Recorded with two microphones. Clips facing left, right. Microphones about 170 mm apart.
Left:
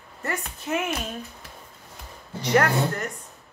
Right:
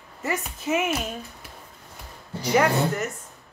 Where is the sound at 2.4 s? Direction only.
5° right (ahead or behind).